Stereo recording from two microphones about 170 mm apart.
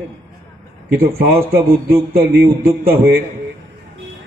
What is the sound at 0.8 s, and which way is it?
A man's voice, 60° right (ahead or behind).